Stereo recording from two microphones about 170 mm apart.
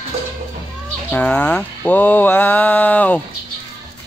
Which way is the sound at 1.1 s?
10° left (ahead or behind).